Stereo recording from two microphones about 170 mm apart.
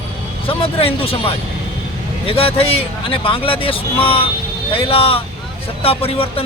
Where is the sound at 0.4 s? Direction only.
35° left (ahead or behind).